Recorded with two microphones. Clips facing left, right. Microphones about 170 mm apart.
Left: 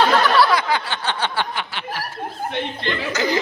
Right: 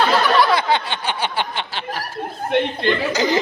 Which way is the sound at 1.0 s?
15° right (ahead or behind).